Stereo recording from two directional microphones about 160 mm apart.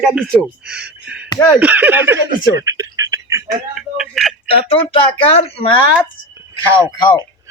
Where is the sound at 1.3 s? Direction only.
20° left (ahead or behind).